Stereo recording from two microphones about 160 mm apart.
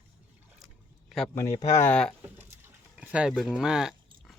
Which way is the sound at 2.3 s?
10° right (ahead or behind).